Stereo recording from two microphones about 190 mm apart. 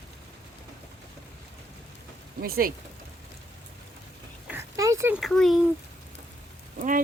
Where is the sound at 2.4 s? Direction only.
50° right (ahead or behind).